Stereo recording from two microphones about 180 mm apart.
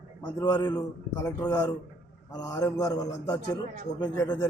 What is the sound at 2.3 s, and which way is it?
A man's voice, 20° left (ahead or behind).